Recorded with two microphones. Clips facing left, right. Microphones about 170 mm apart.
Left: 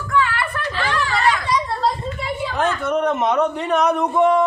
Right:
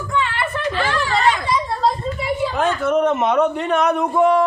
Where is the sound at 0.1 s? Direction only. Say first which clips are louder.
Left 2 dB; 20° right (ahead or behind).